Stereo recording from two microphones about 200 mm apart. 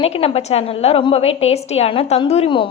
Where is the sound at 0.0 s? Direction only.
30° left (ahead or behind).